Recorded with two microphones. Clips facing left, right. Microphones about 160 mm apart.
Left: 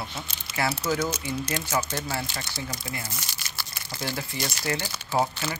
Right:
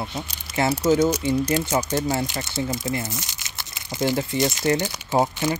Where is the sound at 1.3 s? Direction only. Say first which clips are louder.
Right 7 dB; 10° right (ahead or behind).